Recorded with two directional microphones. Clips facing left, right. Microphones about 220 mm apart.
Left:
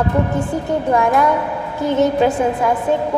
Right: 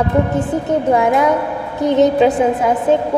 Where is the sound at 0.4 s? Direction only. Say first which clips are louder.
Right 3 dB; 20° right (ahead or behind).